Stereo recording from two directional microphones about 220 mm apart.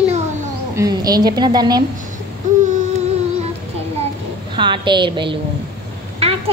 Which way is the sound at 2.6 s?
35° right (ahead or behind).